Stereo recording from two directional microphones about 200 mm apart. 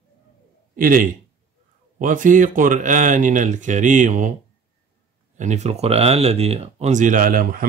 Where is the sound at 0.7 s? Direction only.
45° right (ahead or behind).